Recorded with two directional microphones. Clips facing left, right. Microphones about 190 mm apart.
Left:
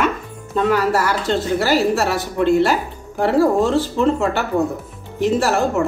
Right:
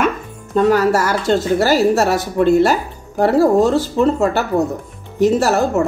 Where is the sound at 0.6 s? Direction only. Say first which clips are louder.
Right 4 dB; 40° right (ahead or behind).